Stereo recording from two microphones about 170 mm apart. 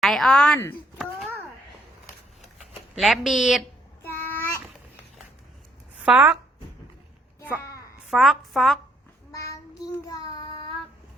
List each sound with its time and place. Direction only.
0.0 s a woman's voice: centre (ahead or behind)
0.9 s a sound: 5° right (ahead or behind)
2.6 s speech: centre (ahead or behind)
4.0 s child singing: 10° left (ahead or behind)
6.0 s speech: 10° right (ahead or behind)
7.6 s a sound: 20° left (ahead or behind)
8.1 s a woman's voice: centre (ahead or behind)
10.1 s child singing: 25° left (ahead or behind)